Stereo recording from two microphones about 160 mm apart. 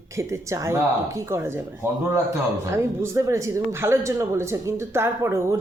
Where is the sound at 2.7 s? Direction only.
20° right (ahead or behind).